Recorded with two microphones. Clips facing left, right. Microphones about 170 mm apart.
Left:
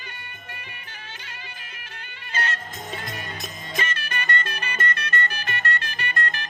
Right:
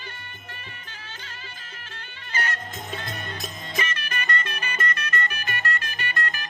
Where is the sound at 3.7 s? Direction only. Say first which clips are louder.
Left 1 dB; 30° left (ahead or behind).